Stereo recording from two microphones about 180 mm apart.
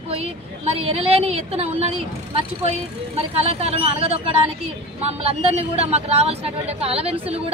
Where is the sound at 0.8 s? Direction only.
35° right (ahead or behind).